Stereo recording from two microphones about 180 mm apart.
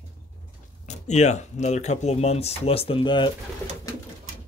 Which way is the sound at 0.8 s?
40° left (ahead or behind).